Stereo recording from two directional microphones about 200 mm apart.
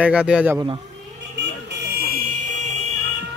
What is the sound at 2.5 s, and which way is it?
Music, 35° right (ahead or behind).